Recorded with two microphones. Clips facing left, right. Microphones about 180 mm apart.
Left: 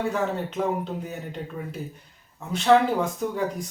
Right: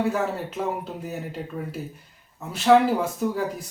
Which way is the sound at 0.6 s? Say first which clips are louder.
Left 3 dB; 5° right (ahead or behind).